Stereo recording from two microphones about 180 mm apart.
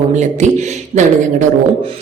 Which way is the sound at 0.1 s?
40° right (ahead or behind).